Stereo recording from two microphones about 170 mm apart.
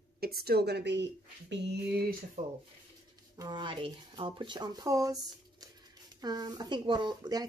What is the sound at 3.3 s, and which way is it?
Speech, 25° right (ahead or behind).